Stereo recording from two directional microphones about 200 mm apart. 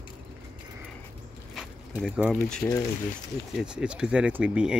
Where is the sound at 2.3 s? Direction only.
10° left (ahead or behind).